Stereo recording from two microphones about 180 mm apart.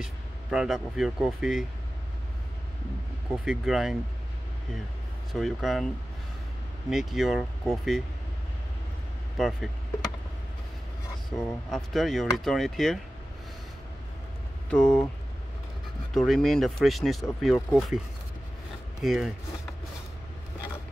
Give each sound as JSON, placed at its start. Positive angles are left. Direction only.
{"t": 0.0, "sound": "speech", "side_deg": -5}
{"t": 3.4, "sound": "speech", "side_deg": 0}
{"t": 5.3, "sound": "speech", "side_deg": 0}
{"t": 6.9, "sound": "speech", "side_deg": 0}
{"t": 9.4, "sound": "speech", "side_deg": 0}
{"t": 11.3, "sound": "speech", "side_deg": 0}
{"t": 14.7, "sound": "speech", "side_deg": 5}
{"t": 16.1, "sound": "speech", "side_deg": 0}
{"t": 18.9, "sound": "speech", "side_deg": 0}